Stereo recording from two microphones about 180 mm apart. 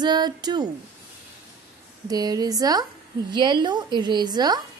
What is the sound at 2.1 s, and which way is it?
A woman's voice, 20° right (ahead or behind).